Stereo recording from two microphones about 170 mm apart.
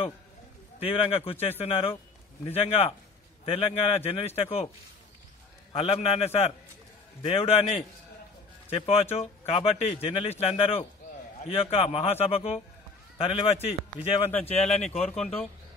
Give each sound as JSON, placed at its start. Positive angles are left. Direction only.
{"t": 0.7, "sound": "a man's voice", "side_deg": 35}
{"t": 5.7, "sound": "a man's voice", "side_deg": 35}
{"t": 8.6, "sound": "a man's voice", "side_deg": 35}